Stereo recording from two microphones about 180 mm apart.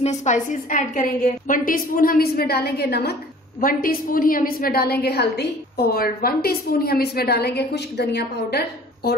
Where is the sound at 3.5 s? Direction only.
50° left (ahead or behind); by 8.6 s 65° left (ahead or behind).